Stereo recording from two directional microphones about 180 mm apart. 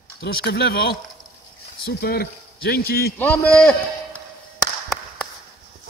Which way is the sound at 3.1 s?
10° left (ahead or behind).